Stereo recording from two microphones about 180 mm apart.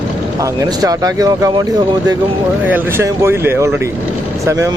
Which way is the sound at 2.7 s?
15° right (ahead or behind).